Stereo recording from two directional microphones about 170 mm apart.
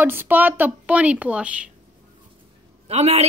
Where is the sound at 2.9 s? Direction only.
40° right (ahead or behind).